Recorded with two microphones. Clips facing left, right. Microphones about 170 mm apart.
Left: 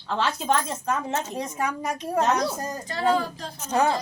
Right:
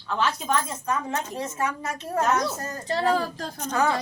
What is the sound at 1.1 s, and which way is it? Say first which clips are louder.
A woman's voice: left 1 dB; 15° left (ahead or behind).